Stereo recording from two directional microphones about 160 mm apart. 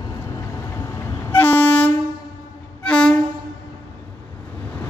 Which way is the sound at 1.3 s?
10° left (ahead or behind).